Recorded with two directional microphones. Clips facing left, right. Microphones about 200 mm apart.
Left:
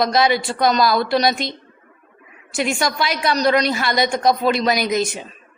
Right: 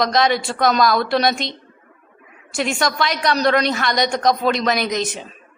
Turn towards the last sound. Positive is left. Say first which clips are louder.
# left 2 dB
turn(degrees=5)  # may be behind; listen again after turning